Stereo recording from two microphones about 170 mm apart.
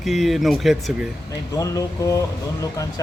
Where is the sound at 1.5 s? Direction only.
20° left (ahead or behind).